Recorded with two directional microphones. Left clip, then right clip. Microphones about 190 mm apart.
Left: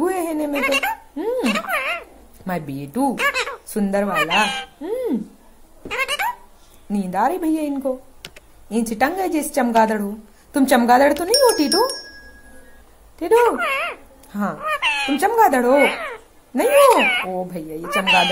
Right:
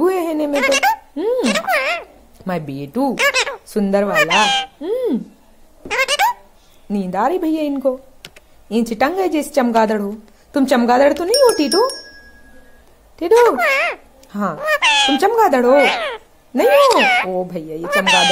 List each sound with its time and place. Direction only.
0.0 s a sound: 20° right (ahead or behind)
6.9 s a woman's voice: 15° right (ahead or behind)
8.2 s computer keyboard: centre (ahead or behind)
8.6 s a woman's voice: 20° right (ahead or behind)
11.7 s speech: centre (ahead or behind)
13.2 s a woman's voice: 25° right (ahead or behind)
14.3 s speech: 15° right (ahead or behind)
14.6 s speech: 30° right (ahead or behind)
15.1 s a woman's voice: 20° right (ahead or behind)
15.7 s a child's voice: 30° right (ahead or behind)
17.3 s a woman's voice: 15° right (ahead or behind)
17.8 s a woman's voice: 30° right (ahead or behind)